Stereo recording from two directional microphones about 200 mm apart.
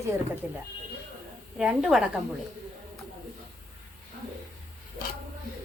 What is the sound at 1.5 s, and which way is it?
Speech, 5° right (ahead or behind).